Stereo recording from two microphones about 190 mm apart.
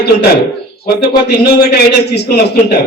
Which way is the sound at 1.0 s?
55° left (ahead or behind).